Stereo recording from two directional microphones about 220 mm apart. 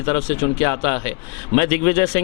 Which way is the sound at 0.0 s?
25° left (ahead or behind).